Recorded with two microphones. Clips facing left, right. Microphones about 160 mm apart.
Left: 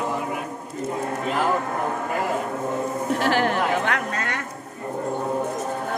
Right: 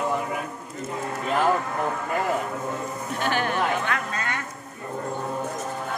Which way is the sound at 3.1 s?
90° left.